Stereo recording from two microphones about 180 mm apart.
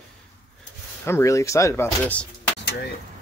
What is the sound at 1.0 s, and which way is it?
Speech, 15° left (ahead or behind).